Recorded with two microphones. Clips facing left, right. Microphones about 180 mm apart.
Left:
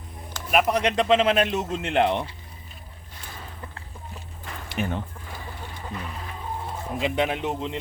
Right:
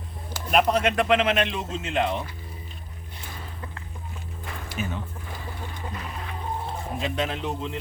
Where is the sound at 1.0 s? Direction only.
30° left (ahead or behind); by 1.9 s 45° left (ahead or behind).